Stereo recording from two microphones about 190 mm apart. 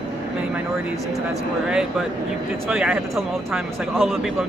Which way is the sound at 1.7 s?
5° right (ahead or behind).